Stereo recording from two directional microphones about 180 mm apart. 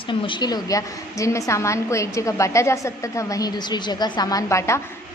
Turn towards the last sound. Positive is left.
turn(degrees=15)  # may be behind; listen again after turning